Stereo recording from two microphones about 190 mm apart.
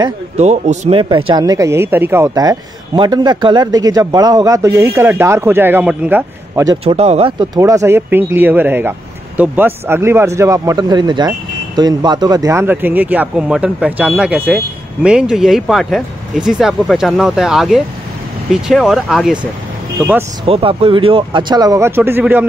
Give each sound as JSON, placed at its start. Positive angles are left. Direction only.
{"t": 0.4, "sound": "a man's voice", "side_deg": -35}
{"t": 6.8, "sound": "a man's voice", "side_deg": -30}
{"t": 20.4, "sound": "speech", "side_deg": -30}